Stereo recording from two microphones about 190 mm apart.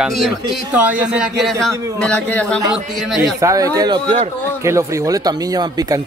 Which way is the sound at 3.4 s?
20° right (ahead or behind).